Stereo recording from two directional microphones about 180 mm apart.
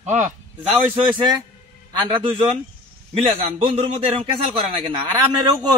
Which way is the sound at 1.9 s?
25° right (ahead or behind).